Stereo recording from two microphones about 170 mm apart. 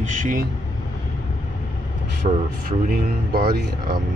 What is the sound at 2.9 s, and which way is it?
Speech, 65° right (ahead or behind).